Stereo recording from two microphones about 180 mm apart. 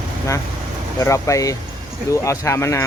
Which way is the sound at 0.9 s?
15° left (ahead or behind).